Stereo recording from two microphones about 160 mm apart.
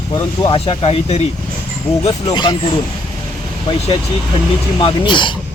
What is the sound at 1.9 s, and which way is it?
Speech, 10° left (ahead or behind).